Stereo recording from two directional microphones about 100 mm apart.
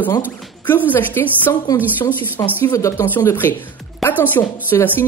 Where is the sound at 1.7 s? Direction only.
40° left (ahead or behind).